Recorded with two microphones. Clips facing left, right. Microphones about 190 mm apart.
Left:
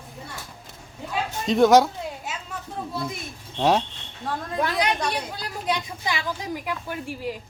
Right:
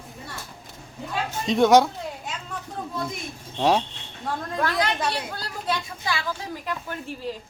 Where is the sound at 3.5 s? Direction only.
Centre (ahead or behind).